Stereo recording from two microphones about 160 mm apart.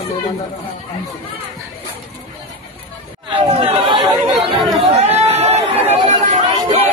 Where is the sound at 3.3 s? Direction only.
35° right (ahead or behind).